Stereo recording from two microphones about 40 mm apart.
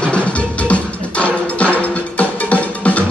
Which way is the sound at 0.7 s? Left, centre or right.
Left.